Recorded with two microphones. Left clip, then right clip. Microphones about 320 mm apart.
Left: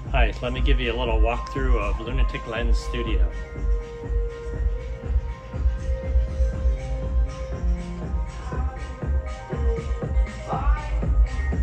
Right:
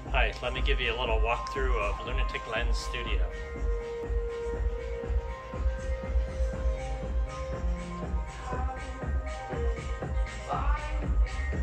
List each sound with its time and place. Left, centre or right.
0.1 s speech: centre